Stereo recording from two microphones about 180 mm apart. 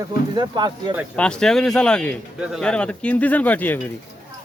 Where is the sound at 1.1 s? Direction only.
5° left (ahead or behind).